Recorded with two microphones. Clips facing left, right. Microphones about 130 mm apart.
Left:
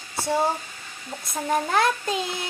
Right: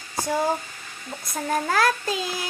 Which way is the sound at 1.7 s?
25° left (ahead or behind).